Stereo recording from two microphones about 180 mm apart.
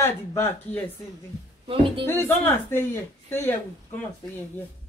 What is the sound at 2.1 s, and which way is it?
A woman's voice, 15° left (ahead or behind).